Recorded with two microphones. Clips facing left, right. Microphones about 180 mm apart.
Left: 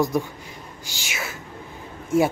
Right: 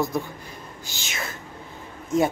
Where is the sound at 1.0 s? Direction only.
10° left (ahead or behind).